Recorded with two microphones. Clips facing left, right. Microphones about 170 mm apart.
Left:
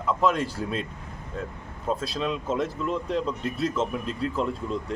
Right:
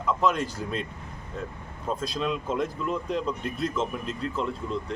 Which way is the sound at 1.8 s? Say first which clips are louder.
Left 1 dB; centre (ahead or behind).